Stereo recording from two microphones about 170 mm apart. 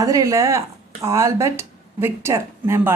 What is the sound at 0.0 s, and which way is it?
Speech, 20° right (ahead or behind).